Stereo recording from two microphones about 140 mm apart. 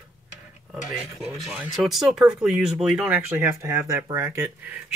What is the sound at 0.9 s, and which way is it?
Speech, centre (ahead or behind).